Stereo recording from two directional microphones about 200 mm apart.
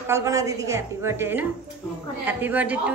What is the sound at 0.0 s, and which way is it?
A woman's voice, 15° right (ahead or behind).